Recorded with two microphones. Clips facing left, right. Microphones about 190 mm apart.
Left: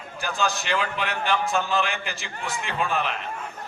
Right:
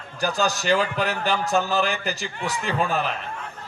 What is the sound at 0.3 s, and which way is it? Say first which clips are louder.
A man's voice: right 4 dB; 40° right (ahead or behind).